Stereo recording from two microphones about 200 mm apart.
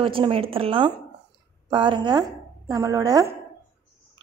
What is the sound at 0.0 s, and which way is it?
A woman's voice, 25° right (ahead or behind).